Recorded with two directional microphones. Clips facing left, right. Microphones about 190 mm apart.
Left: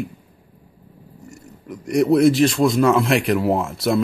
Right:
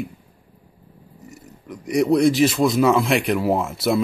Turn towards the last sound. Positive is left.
turn(degrees=0)  # may be behind; listen again after turning